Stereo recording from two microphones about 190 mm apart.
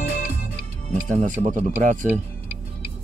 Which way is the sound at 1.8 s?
40° right (ahead or behind).